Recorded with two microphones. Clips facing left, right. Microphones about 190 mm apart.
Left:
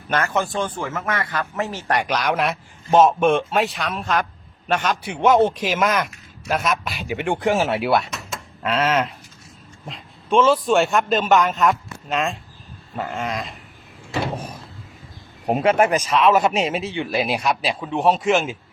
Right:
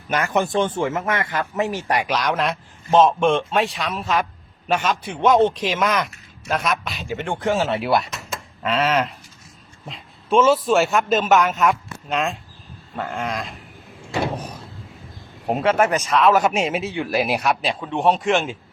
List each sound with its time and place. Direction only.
0.1 s a man's voice: 15° right (ahead or behind)
5.0 s a man's voice: 10° left (ahead or behind)
7.8 s a man's voice: centre (ahead or behind)
15.5 s a man's voice: 10° left (ahead or behind)
16.2 s a man's voice: centre (ahead or behind)